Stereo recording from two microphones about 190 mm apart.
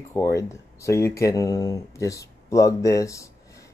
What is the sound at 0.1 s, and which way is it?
Speech, 15° left (ahead or behind).